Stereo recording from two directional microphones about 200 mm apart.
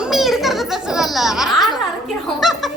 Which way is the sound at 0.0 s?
Centre (ahead or behind).